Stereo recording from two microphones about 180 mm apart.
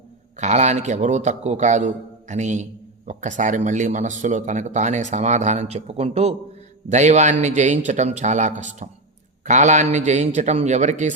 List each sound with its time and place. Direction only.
0.3 s speech: 40° right (ahead or behind)